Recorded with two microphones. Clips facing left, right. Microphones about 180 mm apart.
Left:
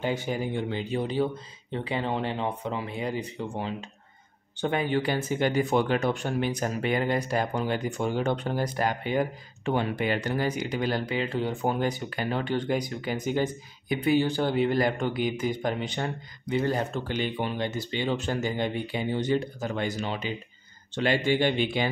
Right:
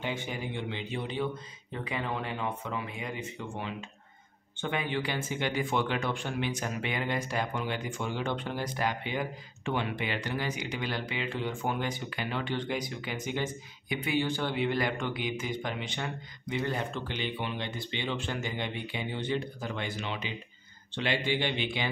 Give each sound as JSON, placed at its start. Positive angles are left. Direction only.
{"t": 0.0, "sound": "a man's voice", "side_deg": 40}